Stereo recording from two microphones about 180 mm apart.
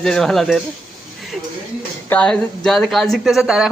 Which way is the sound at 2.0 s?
5° left (ahead or behind).